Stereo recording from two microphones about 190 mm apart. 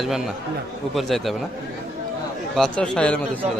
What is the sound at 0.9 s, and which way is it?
Speech, centre (ahead or behind).